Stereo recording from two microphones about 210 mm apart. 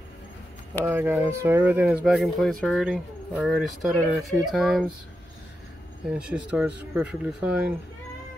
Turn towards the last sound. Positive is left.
turn(degrees=-5)  # may be behind; listen again after turning